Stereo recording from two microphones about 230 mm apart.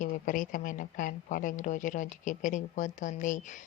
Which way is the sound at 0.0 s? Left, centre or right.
Left.